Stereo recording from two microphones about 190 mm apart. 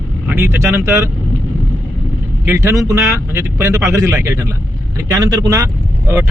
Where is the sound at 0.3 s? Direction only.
10° right (ahead or behind).